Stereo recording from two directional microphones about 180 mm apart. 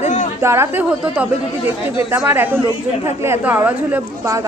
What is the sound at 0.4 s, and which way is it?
A woman's voice, 15° right (ahead or behind).